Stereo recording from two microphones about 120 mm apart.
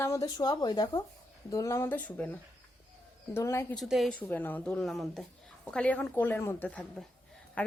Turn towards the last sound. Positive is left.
turn(degrees=15)  # may be behind; listen again after turning